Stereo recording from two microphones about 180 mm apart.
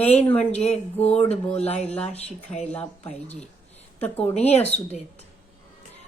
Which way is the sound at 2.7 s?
10° left (ahead or behind).